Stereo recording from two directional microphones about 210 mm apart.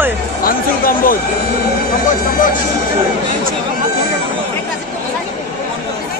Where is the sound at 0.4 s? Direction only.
45° left (ahead or behind).